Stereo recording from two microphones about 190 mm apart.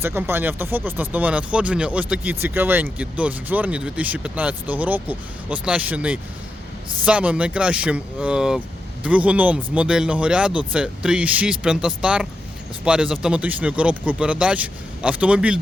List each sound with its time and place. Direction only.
0.0 s speech: 10° right (ahead or behind)